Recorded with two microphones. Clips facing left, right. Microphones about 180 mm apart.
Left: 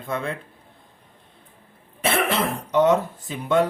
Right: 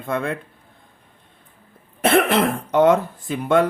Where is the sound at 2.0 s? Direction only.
50° right (ahead or behind).